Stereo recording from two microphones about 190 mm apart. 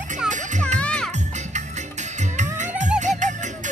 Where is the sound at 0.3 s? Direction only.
40° right (ahead or behind).